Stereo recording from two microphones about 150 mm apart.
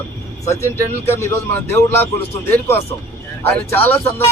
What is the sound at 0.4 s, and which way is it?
Speech, 20° left (ahead or behind).